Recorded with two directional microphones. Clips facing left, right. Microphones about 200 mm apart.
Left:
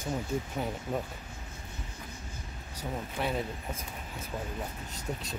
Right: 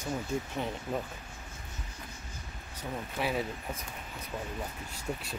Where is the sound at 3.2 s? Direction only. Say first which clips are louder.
Right 1 dB; 5° right (ahead or behind).